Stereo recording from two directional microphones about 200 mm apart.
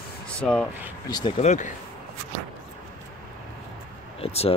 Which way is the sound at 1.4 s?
35° left (ahead or behind).